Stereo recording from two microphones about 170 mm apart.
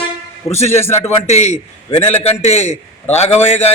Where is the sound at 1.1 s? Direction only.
40° left (ahead or behind).